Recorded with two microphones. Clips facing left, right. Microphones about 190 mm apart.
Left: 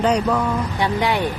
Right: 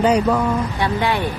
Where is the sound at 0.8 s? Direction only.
15° left (ahead or behind).